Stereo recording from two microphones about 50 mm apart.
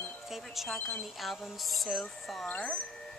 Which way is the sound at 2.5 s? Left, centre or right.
Left.